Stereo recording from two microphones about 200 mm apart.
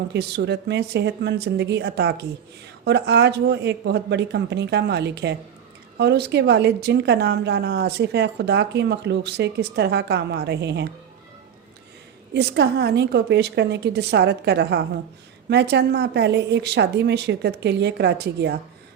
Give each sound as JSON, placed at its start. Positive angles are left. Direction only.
{"t": 0.1, "sound": "a woman's voice", "side_deg": -55}
{"t": 12.3, "sound": "a woman's voice", "side_deg": -55}